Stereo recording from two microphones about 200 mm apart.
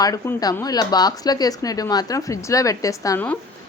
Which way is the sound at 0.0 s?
15° left (ahead or behind).